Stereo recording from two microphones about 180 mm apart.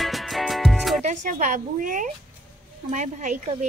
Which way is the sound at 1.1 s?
45° right (ahead or behind).